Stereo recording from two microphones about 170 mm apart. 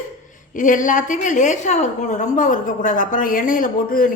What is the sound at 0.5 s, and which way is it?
A woman's voice, 50° left (ahead or behind).